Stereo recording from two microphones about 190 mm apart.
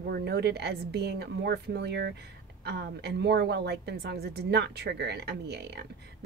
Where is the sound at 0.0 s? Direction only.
60° right (ahead or behind).